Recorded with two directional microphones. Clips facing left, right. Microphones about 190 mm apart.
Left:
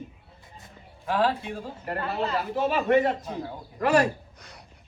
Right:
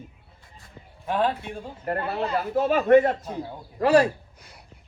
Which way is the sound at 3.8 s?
35° right (ahead or behind).